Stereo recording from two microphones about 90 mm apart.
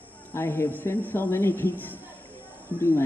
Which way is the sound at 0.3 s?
30° left (ahead or behind).